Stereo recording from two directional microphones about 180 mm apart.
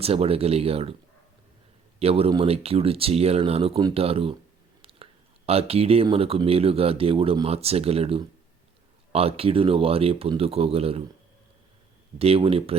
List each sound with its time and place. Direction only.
0.0 s speech: 35° right (ahead or behind)
2.0 s speech: 35° right (ahead or behind)
4.8 s chewing: 30° right (ahead or behind)
5.5 s speech: 35° right (ahead or behind)
12.2 s speech: 35° right (ahead or behind)